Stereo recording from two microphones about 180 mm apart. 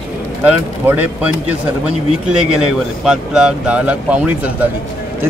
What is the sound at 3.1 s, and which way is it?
Speech, 5° right (ahead or behind).